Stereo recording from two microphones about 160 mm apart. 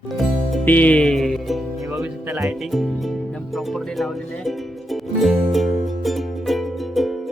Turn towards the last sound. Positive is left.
turn(degrees=0)  # may be behind; listen again after turning